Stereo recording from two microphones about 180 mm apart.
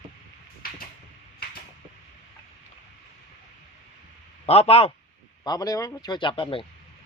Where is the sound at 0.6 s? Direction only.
55° left (ahead or behind).